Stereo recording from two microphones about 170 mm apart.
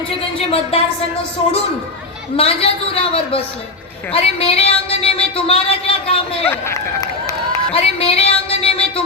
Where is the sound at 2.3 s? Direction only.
35° left (ahead or behind).